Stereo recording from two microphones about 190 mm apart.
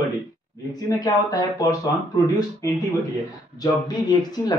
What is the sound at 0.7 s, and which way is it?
Speech, 15° left (ahead or behind).